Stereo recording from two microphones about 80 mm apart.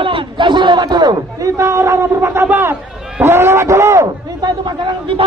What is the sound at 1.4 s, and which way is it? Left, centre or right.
A man's voice, right.